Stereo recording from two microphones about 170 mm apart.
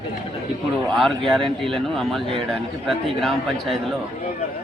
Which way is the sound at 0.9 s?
Centre (ahead or behind).